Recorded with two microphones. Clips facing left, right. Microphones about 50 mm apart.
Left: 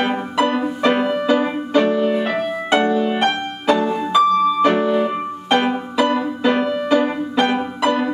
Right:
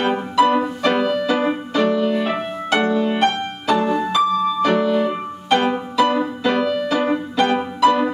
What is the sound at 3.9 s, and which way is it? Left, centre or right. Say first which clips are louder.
Music: left 2 dB; centre.